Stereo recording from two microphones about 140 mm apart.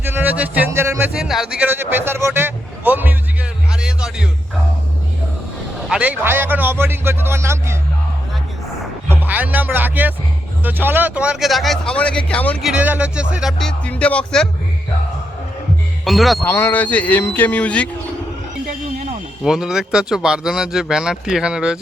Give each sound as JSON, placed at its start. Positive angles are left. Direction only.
{"t": 0.0, "sound": "music", "side_deg": -15}
{"t": 1.1, "sound": "vehicle", "side_deg": 0}
{"t": 3.7, "sound": "music", "side_deg": -5}
{"t": 5.9, "sound": "a man's voice", "side_deg": -10}
{"t": 9.0, "sound": "speech", "side_deg": -10}
{"t": 12.6, "sound": "speech", "side_deg": -10}
{"t": 16.0, "sound": "speech", "side_deg": 0}
{"t": 16.4, "sound": "a man's voice", "side_deg": 15}
{"t": 19.5, "sound": "speech", "side_deg": -5}